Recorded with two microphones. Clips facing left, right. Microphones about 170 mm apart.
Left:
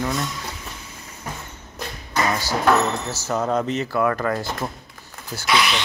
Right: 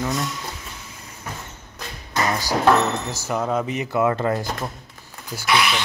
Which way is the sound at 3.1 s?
10° right (ahead or behind).